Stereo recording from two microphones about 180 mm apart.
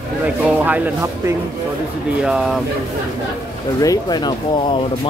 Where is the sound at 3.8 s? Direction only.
20° left (ahead or behind).